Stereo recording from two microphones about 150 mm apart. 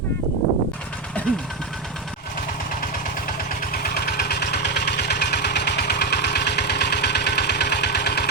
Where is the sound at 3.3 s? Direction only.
85° left.